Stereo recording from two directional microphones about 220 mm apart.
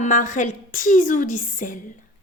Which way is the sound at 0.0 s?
35° left (ahead or behind).